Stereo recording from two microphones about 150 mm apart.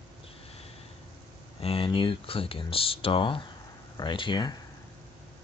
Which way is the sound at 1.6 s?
40° left (ahead or behind).